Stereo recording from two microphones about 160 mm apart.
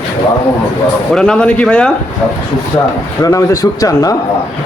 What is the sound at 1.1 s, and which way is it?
Speech, 5° left (ahead or behind).